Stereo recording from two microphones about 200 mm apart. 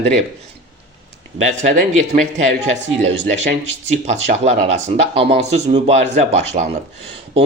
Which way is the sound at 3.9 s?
35° right (ahead or behind).